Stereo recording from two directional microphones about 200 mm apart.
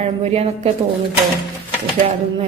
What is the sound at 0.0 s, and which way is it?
Speech, 30° right (ahead or behind).